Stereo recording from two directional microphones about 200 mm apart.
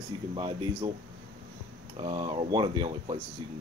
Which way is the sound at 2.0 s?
25° right (ahead or behind).